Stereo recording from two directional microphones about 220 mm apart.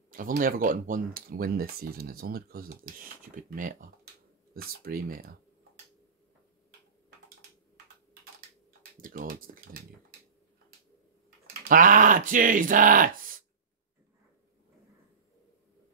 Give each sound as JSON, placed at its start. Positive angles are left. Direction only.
{"t": 0.1, "sound": "speech", "side_deg": -40}
{"t": 9.0, "sound": "speech", "side_deg": -40}
{"t": 11.2, "sound": "speech", "side_deg": -35}